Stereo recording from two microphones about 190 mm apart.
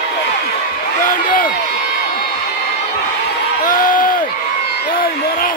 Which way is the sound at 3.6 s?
45° left (ahead or behind).